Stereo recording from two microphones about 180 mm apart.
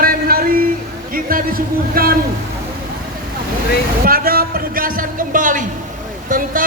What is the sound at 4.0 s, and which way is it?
Speech, 55° right (ahead or behind).